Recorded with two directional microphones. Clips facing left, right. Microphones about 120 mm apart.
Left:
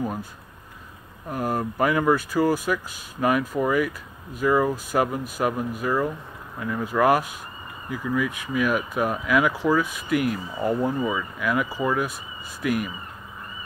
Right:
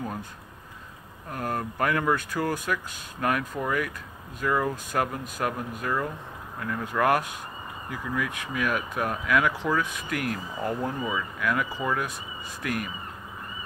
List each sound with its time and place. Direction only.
0.0 s speech: 10° left (ahead or behind)
1.3 s speech: 5° left (ahead or behind)